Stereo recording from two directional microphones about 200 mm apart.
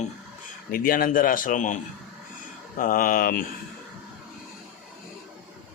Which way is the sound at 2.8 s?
45° left (ahead or behind).